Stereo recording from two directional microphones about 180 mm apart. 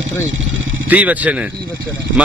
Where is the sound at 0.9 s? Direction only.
10° right (ahead or behind).